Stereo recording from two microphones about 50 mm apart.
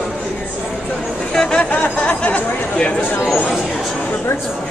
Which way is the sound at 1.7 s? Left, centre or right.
Left.